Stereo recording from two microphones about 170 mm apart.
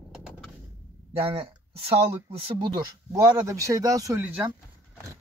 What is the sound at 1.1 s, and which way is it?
Speech, 35° right (ahead or behind).